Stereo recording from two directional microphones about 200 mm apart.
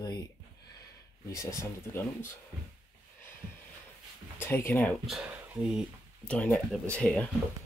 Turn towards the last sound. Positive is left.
turn(degrees=5)  # may be behind; listen again after turning